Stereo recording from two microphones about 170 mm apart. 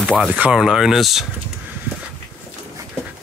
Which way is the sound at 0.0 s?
Centre (ahead or behind).